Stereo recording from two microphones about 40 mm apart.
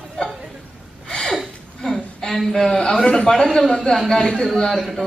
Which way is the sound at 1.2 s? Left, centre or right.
Centre.